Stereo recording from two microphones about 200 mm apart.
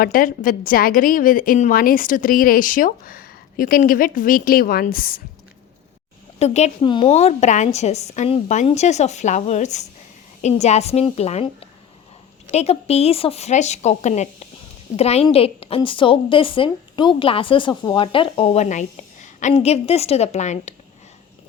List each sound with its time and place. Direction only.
0.0 s a woman's voice: 45° left (ahead or behind)
6.4 s a woman's voice: 35° left (ahead or behind)